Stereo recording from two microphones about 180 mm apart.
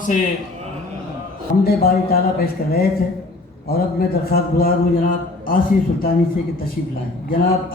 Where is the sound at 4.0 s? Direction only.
55° left (ahead or behind).